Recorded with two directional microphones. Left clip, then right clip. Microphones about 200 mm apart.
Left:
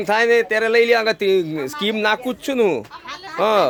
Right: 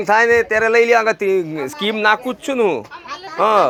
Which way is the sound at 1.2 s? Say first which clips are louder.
Even; 15° left (ahead or behind).